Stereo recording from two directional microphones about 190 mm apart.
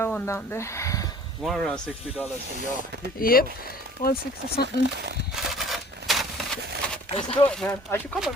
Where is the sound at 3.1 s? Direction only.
50° left (ahead or behind).